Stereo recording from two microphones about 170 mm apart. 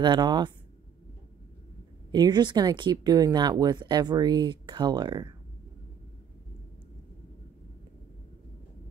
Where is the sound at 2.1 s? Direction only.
25° right (ahead or behind).